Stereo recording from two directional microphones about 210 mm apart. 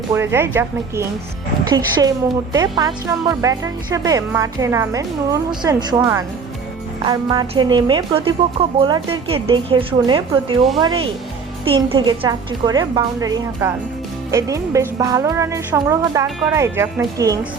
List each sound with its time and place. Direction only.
0.1 s a woman's voice: 10° right (ahead or behind)